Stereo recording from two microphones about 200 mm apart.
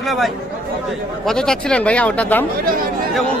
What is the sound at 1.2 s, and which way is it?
Speech, 5° left (ahead or behind).